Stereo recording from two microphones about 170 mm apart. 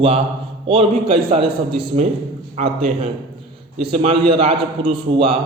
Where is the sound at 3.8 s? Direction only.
35° right (ahead or behind).